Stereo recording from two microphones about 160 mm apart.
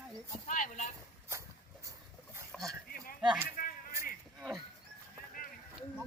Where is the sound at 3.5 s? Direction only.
60° left (ahead or behind).